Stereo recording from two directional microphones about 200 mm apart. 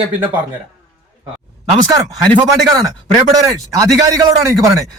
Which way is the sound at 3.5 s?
15° right (ahead or behind).